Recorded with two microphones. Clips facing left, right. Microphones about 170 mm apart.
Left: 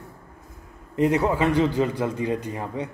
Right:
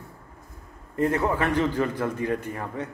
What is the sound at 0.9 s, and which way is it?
A man's voice, 15° left (ahead or behind).